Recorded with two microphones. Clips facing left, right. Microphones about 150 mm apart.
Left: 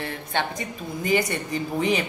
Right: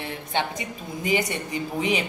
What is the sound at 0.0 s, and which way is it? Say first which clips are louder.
A woman's voice: even; 15° right (ahead or behind).